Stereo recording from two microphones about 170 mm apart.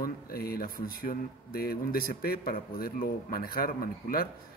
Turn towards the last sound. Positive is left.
turn(degrees=60)  # may be behind; listen again after turning